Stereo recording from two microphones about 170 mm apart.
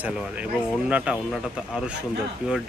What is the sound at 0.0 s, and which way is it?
Speech, 5° right (ahead or behind).